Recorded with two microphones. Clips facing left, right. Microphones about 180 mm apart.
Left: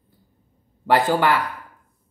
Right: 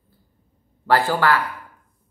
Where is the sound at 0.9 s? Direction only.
15° left (ahead or behind).